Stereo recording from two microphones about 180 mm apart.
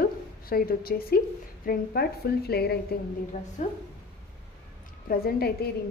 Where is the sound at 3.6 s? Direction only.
40° left (ahead or behind).